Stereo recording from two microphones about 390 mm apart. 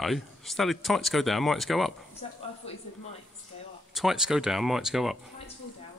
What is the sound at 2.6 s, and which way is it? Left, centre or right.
Speech, centre.